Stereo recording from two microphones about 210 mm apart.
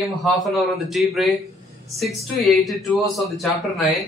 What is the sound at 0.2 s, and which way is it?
A man's voice, centre (ahead or behind).